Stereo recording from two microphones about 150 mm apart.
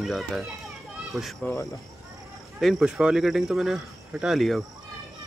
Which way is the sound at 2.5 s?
Centre (ahead or behind).